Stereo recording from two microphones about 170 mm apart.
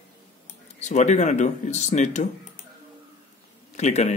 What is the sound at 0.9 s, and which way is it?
Speech, 45° left (ahead or behind).